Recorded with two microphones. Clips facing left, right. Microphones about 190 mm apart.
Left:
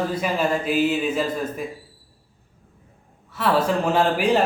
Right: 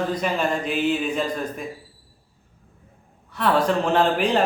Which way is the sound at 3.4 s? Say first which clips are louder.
Even; 5° left (ahead or behind).